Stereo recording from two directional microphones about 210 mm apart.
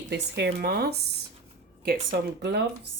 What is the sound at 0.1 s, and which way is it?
A woman's voice, 55° right (ahead or behind).